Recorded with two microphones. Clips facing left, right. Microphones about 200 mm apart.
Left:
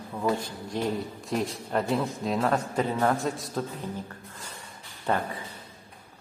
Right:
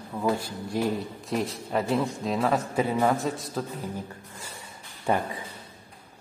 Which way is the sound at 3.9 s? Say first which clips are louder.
Right 1 dB; 10° right (ahead or behind).